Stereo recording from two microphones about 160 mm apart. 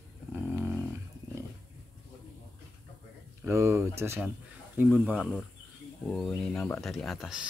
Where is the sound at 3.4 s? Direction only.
20° right (ahead or behind).